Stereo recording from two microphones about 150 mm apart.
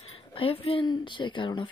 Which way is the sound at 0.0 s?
40° left (ahead or behind).